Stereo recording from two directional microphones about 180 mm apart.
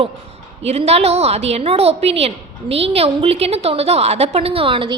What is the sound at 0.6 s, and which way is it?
A woman's voice, 35° right (ahead or behind).